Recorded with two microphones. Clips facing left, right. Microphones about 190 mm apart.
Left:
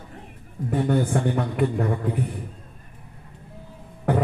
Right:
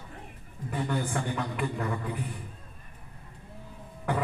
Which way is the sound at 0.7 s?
40° left (ahead or behind).